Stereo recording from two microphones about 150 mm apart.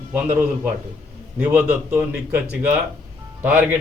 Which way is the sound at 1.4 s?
10° right (ahead or behind).